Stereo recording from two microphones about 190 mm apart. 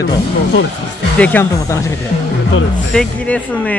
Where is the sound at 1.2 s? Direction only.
10° left (ahead or behind).